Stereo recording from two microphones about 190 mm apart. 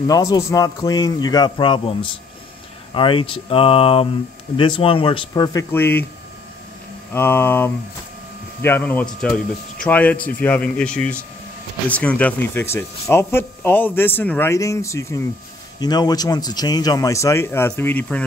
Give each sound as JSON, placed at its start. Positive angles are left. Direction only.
{"t": 0.0, "sound": "speech", "side_deg": 20}
{"t": 7.2, "sound": "speech", "side_deg": 10}